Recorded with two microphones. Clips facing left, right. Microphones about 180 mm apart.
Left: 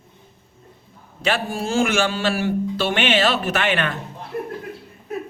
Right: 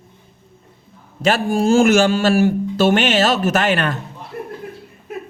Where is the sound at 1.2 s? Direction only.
45° right (ahead or behind).